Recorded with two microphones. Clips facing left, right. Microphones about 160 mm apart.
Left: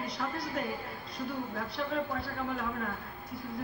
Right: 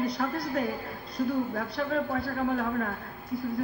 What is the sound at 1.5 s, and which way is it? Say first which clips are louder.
A man's voice: right 4 dB; 50° right (ahead or behind).